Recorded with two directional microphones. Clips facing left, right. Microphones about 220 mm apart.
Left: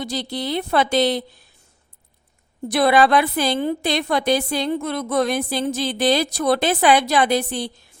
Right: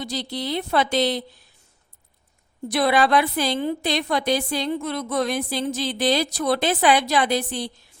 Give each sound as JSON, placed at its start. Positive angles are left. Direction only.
{"t": 0.0, "sound": "a woman's voice", "side_deg": 50}
{"t": 2.6, "sound": "a woman's voice", "side_deg": 50}